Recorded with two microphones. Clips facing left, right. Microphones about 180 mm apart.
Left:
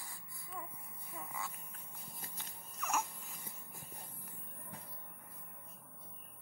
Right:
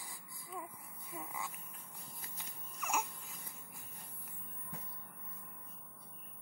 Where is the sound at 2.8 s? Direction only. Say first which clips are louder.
Even; 10° right (ahead or behind).